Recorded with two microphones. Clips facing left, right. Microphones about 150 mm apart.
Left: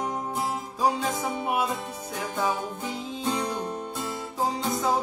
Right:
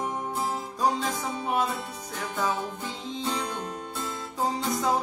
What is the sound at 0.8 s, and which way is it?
Music, 10° left (ahead or behind).